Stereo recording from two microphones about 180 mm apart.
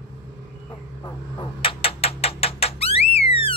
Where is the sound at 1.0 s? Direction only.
25° left (ahead or behind).